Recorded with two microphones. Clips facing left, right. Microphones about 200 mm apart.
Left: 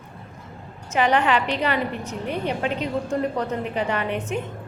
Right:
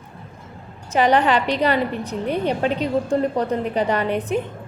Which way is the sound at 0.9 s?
35° right (ahead or behind).